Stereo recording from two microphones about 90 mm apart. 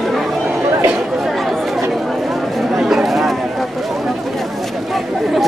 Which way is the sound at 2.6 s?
5° right (ahead or behind).